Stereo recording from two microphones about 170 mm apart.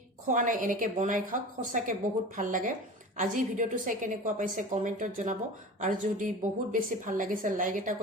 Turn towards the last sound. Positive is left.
turn(degrees=-50)  # may be behind; listen again after turning